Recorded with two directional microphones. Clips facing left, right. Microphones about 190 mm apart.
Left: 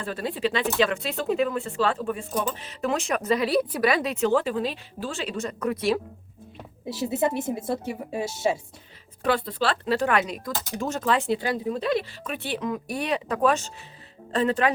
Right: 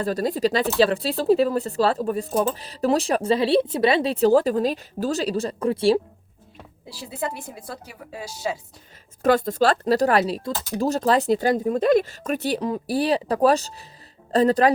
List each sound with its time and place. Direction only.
0.0 s speech: 40° right (ahead or behind)
6.8 s a woman's voice: 20° left (ahead or behind)
9.2 s speech: 45° right (ahead or behind)